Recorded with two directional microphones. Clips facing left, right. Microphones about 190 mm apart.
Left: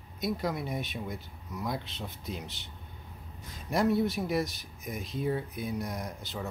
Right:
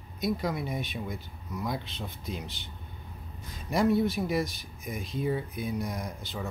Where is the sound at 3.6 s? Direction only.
Centre (ahead or behind).